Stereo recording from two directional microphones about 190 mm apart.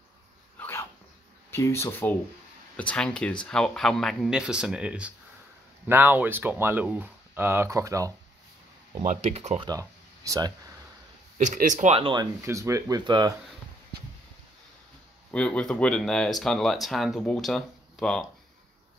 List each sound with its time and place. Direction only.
0.6 s dog: 15° left (ahead or behind)
1.5 s speech: 15° left (ahead or behind); by 8.1 s 15° right (ahead or behind)
9.0 s speech: 40° right (ahead or behind)
9.7 s a sound: 15° right (ahead or behind)
11.3 s speech: 40° right (ahead or behind)
12.4 s speech: 15° right (ahead or behind)
15.3 s speech: 5° left (ahead or behind)